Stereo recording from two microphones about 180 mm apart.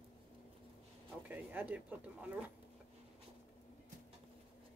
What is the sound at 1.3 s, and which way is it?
Speech, 10° right (ahead or behind).